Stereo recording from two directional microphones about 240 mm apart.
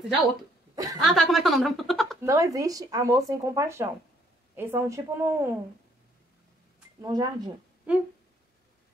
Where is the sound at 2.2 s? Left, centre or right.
Centre.